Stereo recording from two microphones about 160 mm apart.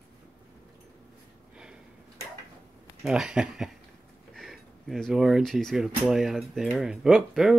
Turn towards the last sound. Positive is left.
turn(degrees=0)  # may be behind; listen again after turning